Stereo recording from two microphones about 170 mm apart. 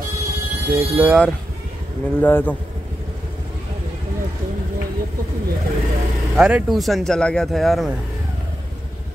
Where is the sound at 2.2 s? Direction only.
10° left (ahead or behind).